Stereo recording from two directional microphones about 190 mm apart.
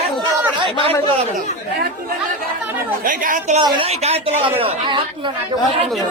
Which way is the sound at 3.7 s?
30° right (ahead or behind).